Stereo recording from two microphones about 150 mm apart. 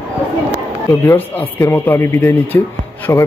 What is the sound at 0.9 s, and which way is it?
A man's voice, 15° left (ahead or behind).